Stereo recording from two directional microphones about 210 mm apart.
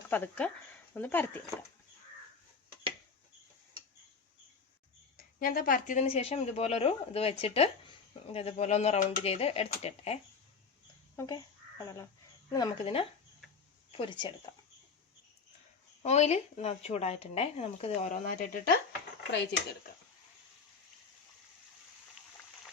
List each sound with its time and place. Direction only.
0.1 s speech: 5° left (ahead or behind)
5.1 s speech: 45° left (ahead or behind)
11.2 s speech: 15° left (ahead or behind)
16.0 s speech: 30° left (ahead or behind)
19.3 s dishes: 55° left (ahead or behind)